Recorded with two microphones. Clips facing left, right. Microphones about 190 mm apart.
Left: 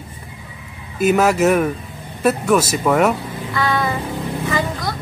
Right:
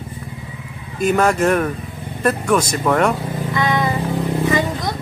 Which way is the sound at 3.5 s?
20° right (ahead or behind).